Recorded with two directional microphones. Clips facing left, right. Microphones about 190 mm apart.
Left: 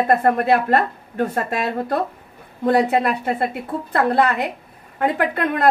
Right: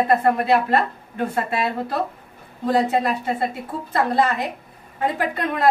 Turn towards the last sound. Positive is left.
turn(degrees=60)  # may be behind; listen again after turning